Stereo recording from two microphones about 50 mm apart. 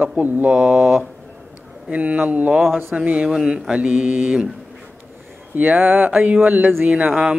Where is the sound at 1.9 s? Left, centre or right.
Right.